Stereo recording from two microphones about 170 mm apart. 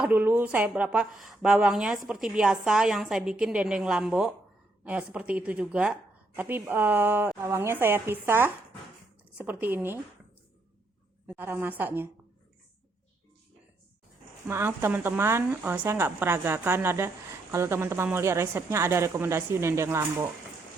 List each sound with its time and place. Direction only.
0.0 s a woman's voice: 10° right (ahead or behind)
11.3 s a woman's voice: 10° right (ahead or behind)
14.4 s a woman's voice: 15° right (ahead or behind)